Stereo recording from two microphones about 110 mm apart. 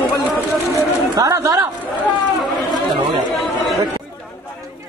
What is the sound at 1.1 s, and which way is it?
Speech, 30° right (ahead or behind).